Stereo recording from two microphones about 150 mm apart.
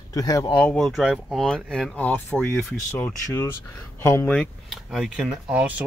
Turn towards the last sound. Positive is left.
turn(degrees=-10)  # may be behind; listen again after turning